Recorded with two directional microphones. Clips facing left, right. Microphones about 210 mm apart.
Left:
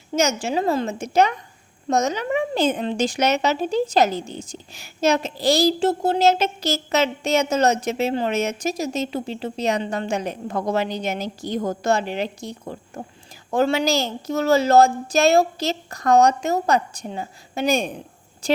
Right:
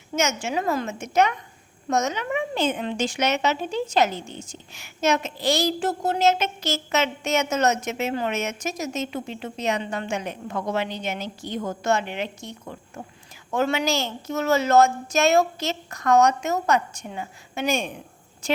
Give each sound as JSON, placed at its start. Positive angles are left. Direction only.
{"t": 0.1, "sound": "a woman's voice", "side_deg": 35}